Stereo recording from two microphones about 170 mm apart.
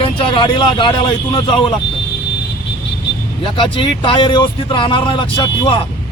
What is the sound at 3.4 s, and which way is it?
Speech, 30° left (ahead or behind).